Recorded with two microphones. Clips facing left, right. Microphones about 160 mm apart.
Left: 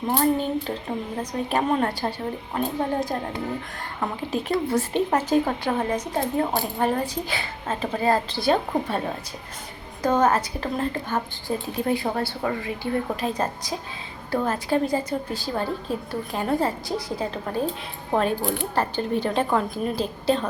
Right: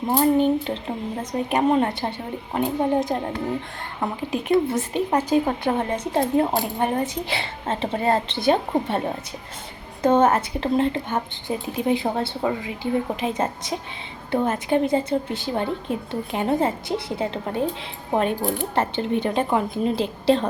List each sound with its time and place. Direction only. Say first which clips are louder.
0.2 s speech: right 6 dB; 25° right (ahead or behind)
5.7 s speech: right 2 dB; 25° right (ahead or behind)
10.0 s speech: right 3 dB; 25° right (ahead or behind)